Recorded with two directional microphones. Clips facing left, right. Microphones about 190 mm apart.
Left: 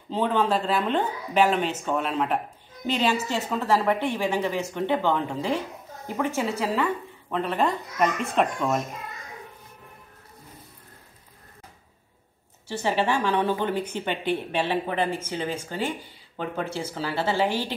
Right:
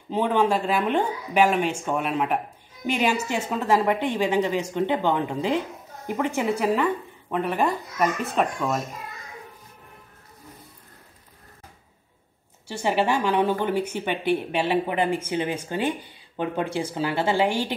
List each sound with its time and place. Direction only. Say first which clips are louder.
0.1 s a woman's voice: right 2 dB; 10° right (ahead or behind)
12.6 s a woman's voice: right 2 dB; 10° right (ahead or behind)